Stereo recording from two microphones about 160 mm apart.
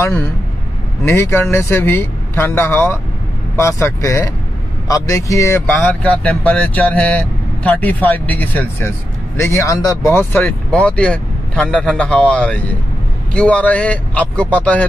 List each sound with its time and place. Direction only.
1.0 s a man's voice: 15° left (ahead or behind)
5.8 s speech: 5° left (ahead or behind)